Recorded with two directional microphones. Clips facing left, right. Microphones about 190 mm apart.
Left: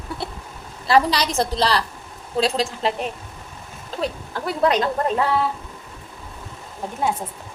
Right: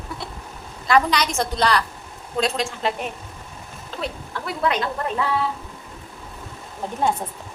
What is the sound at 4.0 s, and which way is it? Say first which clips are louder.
Speech: left 4 dB; 35° left (ahead or behind).